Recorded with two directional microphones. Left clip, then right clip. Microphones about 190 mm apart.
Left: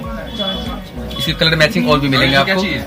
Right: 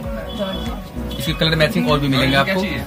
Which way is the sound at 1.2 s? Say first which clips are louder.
Left 4 dB; centre (ahead or behind).